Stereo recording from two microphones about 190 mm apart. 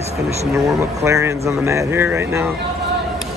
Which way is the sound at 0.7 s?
15° right (ahead or behind).